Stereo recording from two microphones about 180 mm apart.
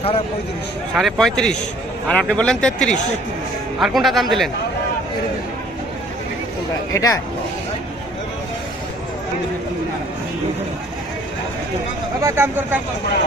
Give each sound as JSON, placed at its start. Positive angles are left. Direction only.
{"t": 0.9, "sound": "speech", "side_deg": 0}
{"t": 6.9, "sound": "speech", "side_deg": 15}
{"t": 12.2, "sound": "speech", "side_deg": -10}